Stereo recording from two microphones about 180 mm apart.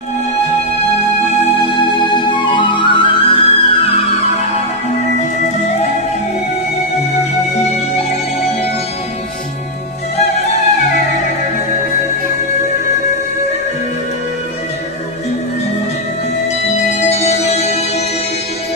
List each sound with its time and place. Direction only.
1.6 s music: 30° left (ahead or behind)
10.1 s music: 40° left (ahead or behind)
17.1 s music: 35° left (ahead or behind)